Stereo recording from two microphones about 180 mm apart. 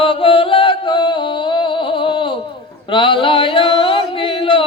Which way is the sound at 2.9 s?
30° left (ahead or behind).